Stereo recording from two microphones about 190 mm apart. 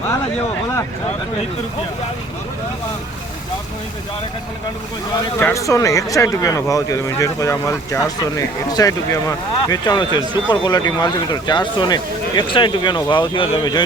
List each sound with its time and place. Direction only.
5.4 s speech: 15° left (ahead or behind)